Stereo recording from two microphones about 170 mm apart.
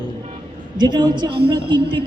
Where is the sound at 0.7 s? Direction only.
25° right (ahead or behind).